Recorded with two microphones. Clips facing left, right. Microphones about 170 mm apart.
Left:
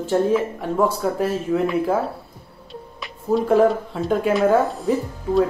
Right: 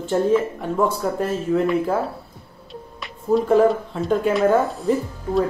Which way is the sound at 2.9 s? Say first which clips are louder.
Right 1 dB; centre (ahead or behind).